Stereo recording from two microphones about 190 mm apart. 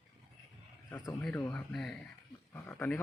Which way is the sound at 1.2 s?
10° left (ahead or behind).